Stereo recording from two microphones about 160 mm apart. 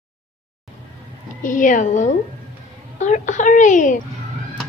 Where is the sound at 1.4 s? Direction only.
55° left (ahead or behind).